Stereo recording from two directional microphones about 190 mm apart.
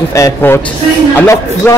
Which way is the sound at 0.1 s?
15° left (ahead or behind).